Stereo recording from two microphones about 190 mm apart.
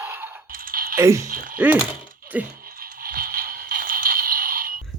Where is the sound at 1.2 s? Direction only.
45° right (ahead or behind).